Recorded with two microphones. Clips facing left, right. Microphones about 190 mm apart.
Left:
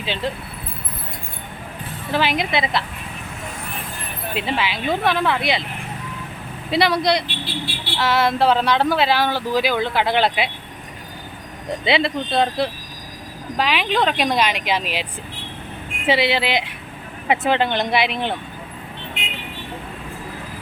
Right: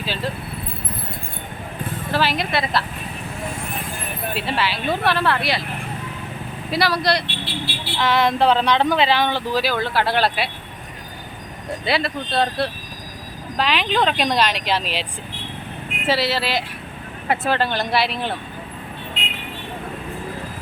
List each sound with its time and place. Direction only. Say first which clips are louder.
2.1 s speech: left 1 dB; 15° left (ahead or behind)
4.4 s speech: left 1 dB; 15° left (ahead or behind)
6.7 s speech: left 2 dB; 20° left (ahead or behind)
7.9 s speech: even; 5° left (ahead or behind)
11.9 s speech: left 3 dB; 20° left (ahead or behind)
16.0 s speech: left 2 dB; 20° left (ahead or behind)